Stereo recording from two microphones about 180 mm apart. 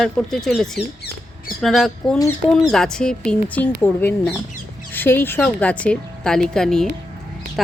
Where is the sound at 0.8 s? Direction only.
60° left (ahead or behind).